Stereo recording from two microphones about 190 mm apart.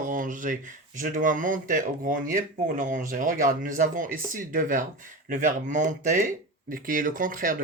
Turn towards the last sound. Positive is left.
turn(degrees=-45)  # may be behind; listen again after turning